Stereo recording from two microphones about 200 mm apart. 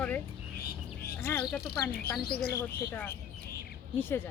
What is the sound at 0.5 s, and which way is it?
Music, 50° left (ahead or behind).